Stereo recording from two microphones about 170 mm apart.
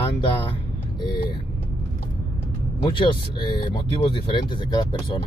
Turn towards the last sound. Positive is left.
turn(degrees=30)  # may be behind; listen again after turning